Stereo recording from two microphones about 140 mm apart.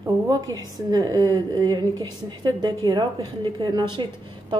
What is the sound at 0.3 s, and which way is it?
A woman's voice, 25° right (ahead or behind).